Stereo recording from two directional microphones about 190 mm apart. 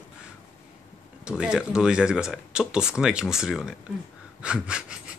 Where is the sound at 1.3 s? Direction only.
5° right (ahead or behind).